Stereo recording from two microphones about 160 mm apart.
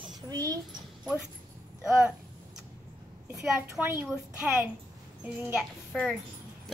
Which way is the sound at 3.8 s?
5° right (ahead or behind).